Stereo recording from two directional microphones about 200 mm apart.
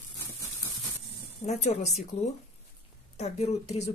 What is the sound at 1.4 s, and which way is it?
Speech, 35° left (ahead or behind).